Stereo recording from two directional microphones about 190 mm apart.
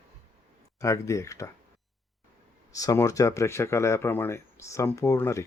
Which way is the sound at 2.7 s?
15° left (ahead or behind).